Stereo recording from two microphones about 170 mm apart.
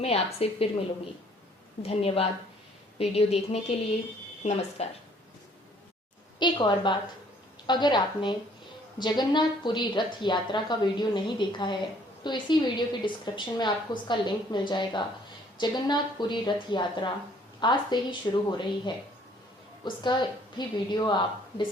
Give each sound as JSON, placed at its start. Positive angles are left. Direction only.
{"t": 0.0, "sound": "speech", "side_deg": 35}
{"t": 1.8, "sound": "speech", "side_deg": 35}
{"t": 6.4, "sound": "a woman's voice", "side_deg": 25}